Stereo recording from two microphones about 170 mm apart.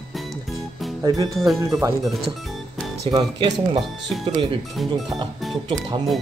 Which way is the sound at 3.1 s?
30° right (ahead or behind).